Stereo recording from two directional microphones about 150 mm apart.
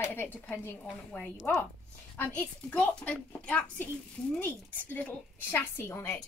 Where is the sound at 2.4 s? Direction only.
10° left (ahead or behind).